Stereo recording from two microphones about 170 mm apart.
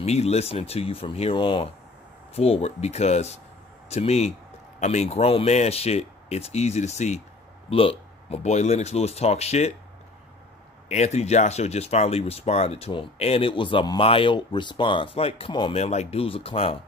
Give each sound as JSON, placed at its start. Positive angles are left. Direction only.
{"t": 0.0, "sound": "speech", "side_deg": 40}
{"t": 10.9, "sound": "speech", "side_deg": 40}